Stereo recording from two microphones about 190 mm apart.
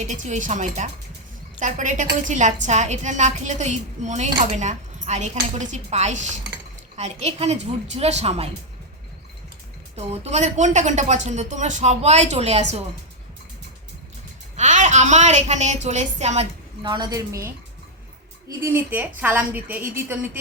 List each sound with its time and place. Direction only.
0.0 s a woman's voice: 40° right (ahead or behind)
9.9 s a woman's voice: 35° right (ahead or behind)
14.5 s a woman's voice: 40° right (ahead or behind)
16.8 s a woman's voice: 25° right (ahead or behind)